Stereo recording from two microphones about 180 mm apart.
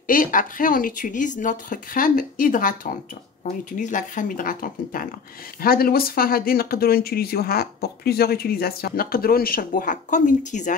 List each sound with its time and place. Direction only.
0.0 s speech: 50° left (ahead or behind)